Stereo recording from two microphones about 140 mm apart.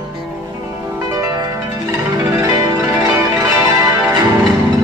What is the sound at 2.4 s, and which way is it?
Zither, 25° right (ahead or behind).